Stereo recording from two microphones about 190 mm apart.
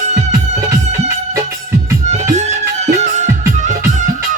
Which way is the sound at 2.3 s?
35° right (ahead or behind).